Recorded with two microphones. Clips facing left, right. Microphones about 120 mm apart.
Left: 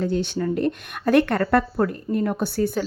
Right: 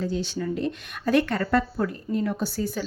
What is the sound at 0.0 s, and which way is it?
Speech, 60° left (ahead or behind).